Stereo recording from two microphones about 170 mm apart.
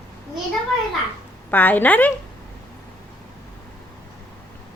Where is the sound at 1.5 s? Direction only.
10° left (ahead or behind).